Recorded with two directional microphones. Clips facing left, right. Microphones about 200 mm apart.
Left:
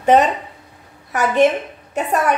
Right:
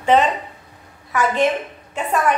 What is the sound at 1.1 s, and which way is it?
Speech, 40° left (ahead or behind).